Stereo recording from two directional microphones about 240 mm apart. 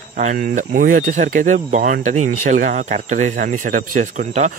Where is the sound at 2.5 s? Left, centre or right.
Right.